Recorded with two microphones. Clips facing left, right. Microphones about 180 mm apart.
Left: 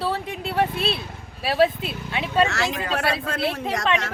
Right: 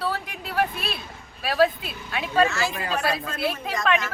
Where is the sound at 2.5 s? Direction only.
70° left (ahead or behind).